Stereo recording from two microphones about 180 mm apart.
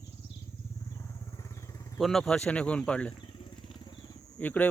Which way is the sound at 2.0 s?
Centre (ahead or behind).